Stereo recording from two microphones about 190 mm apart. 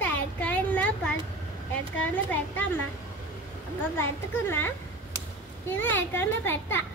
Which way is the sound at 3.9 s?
10° left (ahead or behind).